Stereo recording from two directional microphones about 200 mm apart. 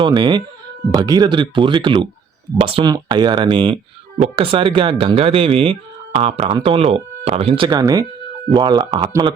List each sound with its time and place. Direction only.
0.0 s speech: 25° right (ahead or behind)